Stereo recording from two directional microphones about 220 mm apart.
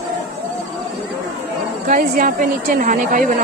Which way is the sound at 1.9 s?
40° right (ahead or behind).